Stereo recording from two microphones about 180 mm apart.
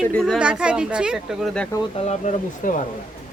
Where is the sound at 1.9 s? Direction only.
40° left (ahead or behind).